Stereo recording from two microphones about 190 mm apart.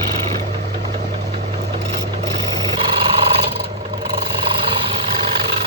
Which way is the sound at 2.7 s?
30° right (ahead or behind).